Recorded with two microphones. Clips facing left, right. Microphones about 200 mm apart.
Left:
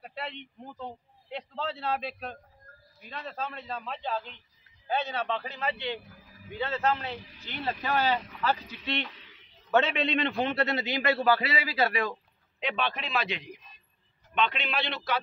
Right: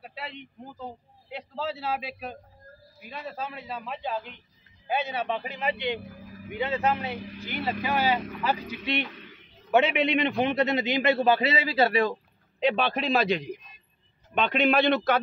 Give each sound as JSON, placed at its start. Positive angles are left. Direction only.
{"t": 0.0, "sound": "a man's voice", "side_deg": -5}
{"t": 9.1, "sound": "a sound", "side_deg": -55}
{"t": 9.7, "sound": "a man's voice", "side_deg": -15}